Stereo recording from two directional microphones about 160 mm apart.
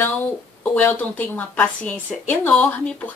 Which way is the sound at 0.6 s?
10° left (ahead or behind).